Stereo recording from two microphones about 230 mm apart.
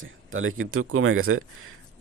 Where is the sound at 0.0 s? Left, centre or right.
Right.